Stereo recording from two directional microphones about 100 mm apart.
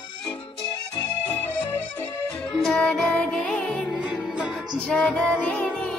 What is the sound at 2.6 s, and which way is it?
Music, 10° left (ahead or behind).